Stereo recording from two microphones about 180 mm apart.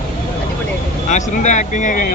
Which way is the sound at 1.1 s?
45° left (ahead or behind).